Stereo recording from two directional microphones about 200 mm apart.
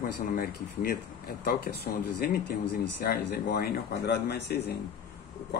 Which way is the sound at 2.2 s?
50° left (ahead or behind).